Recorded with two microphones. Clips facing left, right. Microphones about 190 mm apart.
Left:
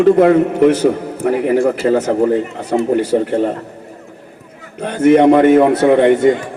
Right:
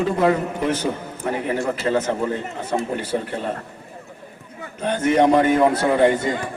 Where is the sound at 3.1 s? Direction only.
45° left (ahead or behind).